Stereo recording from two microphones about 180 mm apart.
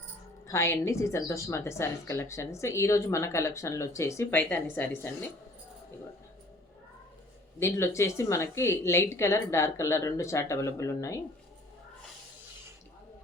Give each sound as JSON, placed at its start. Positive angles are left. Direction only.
{"t": 0.4, "sound": "a woman's voice", "side_deg": 15}
{"t": 7.6, "sound": "a woman's voice", "side_deg": 15}